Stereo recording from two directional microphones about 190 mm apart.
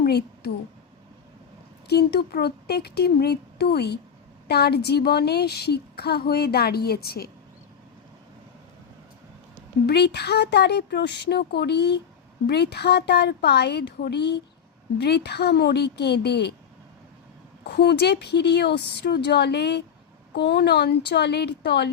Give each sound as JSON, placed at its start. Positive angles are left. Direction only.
{"t": 0.0, "sound": "a sound", "side_deg": 55}
{"t": 1.9, "sound": "a woman's voice", "side_deg": 60}
{"t": 9.8, "sound": "a woman's voice", "side_deg": 60}
{"t": 17.6, "sound": "a woman's voice", "side_deg": 60}